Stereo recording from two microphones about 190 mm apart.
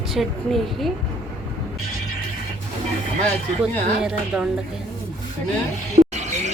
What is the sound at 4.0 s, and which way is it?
Speech, 5° right (ahead or behind).